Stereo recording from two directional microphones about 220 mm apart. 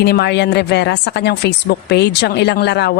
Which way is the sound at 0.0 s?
50° left (ahead or behind).